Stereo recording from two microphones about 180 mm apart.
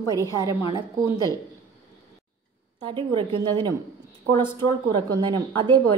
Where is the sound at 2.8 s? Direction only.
25° right (ahead or behind).